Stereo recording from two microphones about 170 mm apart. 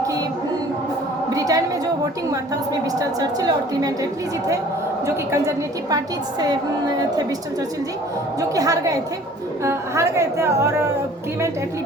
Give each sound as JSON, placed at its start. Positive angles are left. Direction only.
{"t": 1.3, "sound": "a sound", "side_deg": -20}
{"t": 3.2, "sound": "a woman's voice", "side_deg": -20}
{"t": 5.0, "sound": "speech", "side_deg": -15}
{"t": 8.4, "sound": "a woman's voice", "side_deg": -20}